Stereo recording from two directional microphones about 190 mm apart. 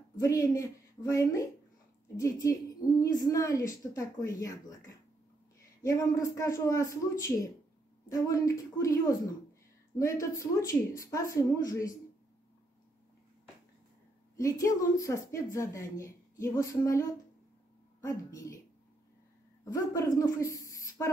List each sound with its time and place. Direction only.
0.2 s a woman's voice: 15° left (ahead or behind)
14.3 s a woman's voice: 15° left (ahead or behind)
19.6 s speech: 15° left (ahead or behind)